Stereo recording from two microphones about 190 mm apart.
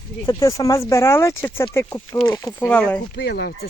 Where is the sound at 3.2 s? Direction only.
60° left (ahead or behind).